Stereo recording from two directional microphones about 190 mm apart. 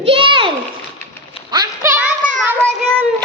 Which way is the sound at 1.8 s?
10° right (ahead or behind).